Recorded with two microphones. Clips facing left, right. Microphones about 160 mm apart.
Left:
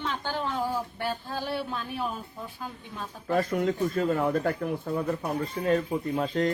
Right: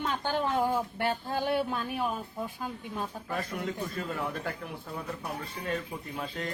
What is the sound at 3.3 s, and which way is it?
Speech, 45° left (ahead or behind).